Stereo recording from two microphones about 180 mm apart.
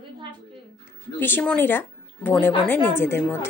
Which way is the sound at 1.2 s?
10° left (ahead or behind).